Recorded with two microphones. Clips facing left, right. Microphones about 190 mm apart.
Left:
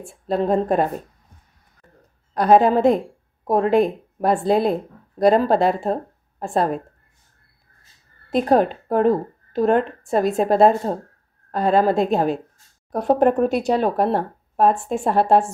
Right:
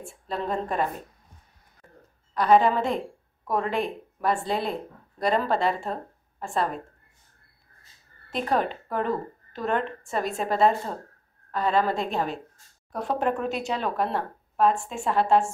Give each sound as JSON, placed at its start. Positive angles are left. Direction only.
{"t": 0.3, "sound": "a woman's voice", "side_deg": 40}
{"t": 2.3, "sound": "a woman's voice", "side_deg": 40}
{"t": 8.3, "sound": "a woman's voice", "side_deg": 40}